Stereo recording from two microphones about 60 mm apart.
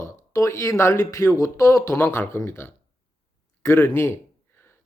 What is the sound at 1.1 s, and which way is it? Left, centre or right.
Speech, left.